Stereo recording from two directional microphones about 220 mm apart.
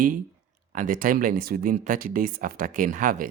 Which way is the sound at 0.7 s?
35° right (ahead or behind).